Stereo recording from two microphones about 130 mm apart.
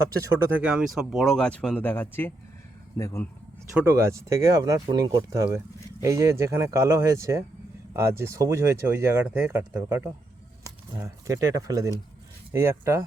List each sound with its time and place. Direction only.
0.3 s speech: 15° right (ahead or behind); by 3.2 s 25° left (ahead or behind)
3.9 s speech: 25° right (ahead or behind)